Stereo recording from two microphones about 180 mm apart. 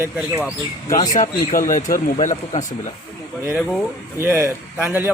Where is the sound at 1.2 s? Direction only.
50° left (ahead or behind).